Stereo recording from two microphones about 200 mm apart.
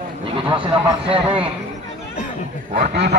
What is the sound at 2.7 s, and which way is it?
Speech, 50° right (ahead or behind).